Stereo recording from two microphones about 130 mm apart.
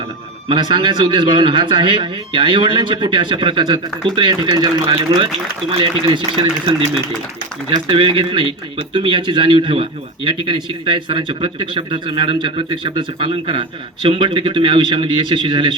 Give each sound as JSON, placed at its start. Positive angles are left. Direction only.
{"t": 0.4, "sound": "speech", "side_deg": -35}